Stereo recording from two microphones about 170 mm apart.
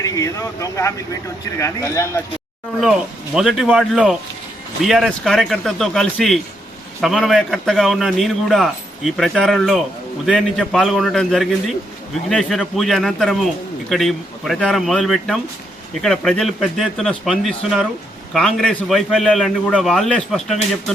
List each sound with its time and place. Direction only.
0.0 s speech: 20° left (ahead or behind)
3.3 s a man's voice: 5° right (ahead or behind)